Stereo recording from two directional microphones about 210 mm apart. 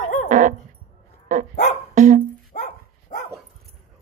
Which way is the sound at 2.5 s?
35° left (ahead or behind).